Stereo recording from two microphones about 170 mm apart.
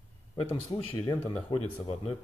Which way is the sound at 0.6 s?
20° left (ahead or behind).